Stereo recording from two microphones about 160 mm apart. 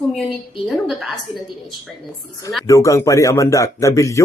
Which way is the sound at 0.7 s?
Centre (ahead or behind).